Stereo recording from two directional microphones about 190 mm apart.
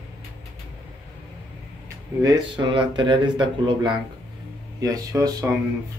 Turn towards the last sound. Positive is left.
turn(degrees=-20)  # may be behind; listen again after turning